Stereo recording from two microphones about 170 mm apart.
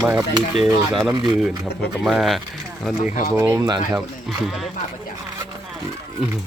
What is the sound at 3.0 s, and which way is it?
Speech, 50° left (ahead or behind).